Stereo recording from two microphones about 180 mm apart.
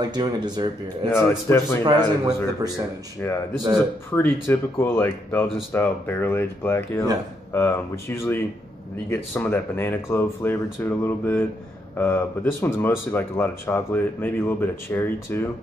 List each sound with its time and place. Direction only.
0.0 s a man's voice: 25° right (ahead or behind)
1.1 s speech: 15° left (ahead or behind)
1.9 s a man's voice: 20° right (ahead or behind)
3.2 s speech: 10° left (ahead or behind)